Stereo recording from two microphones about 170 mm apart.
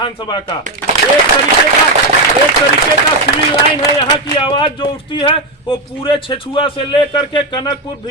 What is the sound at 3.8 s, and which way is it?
Speech, 25° left (ahead or behind).